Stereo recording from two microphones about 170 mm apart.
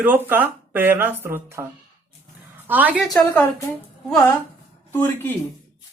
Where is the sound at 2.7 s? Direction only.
10° right (ahead or behind).